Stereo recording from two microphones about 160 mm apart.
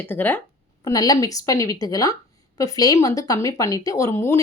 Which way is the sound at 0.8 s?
20° left (ahead or behind).